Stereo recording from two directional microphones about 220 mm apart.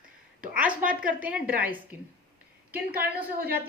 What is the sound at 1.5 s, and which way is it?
Speech, 40° right (ahead or behind).